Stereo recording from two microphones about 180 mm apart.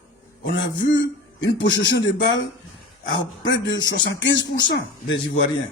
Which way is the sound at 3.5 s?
90° left.